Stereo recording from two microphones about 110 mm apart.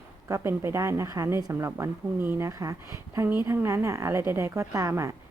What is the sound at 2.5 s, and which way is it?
A woman's voice, 30° right (ahead or behind).